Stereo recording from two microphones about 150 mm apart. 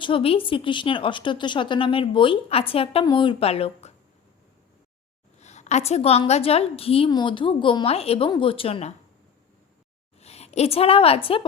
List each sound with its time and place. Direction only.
0.0 s a woman's voice: 40° left (ahead or behind)
5.4 s a woman's voice: 50° left (ahead or behind)
10.2 s a woman's voice: 45° left (ahead or behind)